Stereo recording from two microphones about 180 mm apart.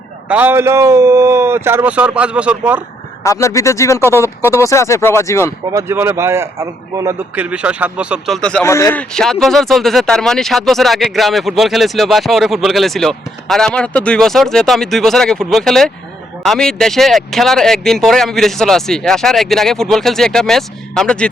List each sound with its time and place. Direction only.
0.3 s a man's voice: 10° right (ahead or behind)
3.2 s speech: 15° left (ahead or behind)
5.7 s a man's voice: 10° right (ahead or behind); by 8.6 s 5° left (ahead or behind)
8.6 s speech: 15° left (ahead or behind)